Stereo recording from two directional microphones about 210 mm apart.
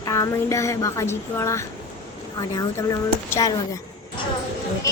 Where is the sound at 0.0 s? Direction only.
15° left (ahead or behind).